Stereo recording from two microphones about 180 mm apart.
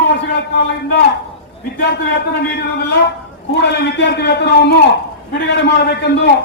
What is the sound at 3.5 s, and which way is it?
A man's voice, 70° left (ahead or behind).